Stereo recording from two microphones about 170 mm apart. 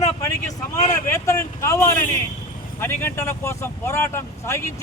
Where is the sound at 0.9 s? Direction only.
15° left (ahead or behind).